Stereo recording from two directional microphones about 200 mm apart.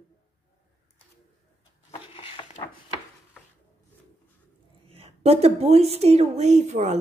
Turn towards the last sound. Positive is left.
turn(degrees=-35)  # may be behind; listen again after turning